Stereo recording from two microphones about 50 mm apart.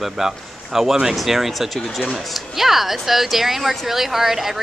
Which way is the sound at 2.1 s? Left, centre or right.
Centre.